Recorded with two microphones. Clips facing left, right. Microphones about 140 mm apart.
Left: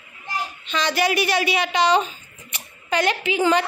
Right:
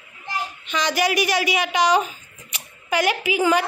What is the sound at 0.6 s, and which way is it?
A woman's voice, 15° right (ahead or behind).